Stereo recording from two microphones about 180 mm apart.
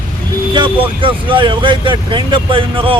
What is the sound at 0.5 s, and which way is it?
Speech, 25° right (ahead or behind).